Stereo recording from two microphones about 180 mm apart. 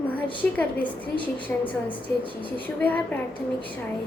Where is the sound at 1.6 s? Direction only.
25° left (ahead or behind).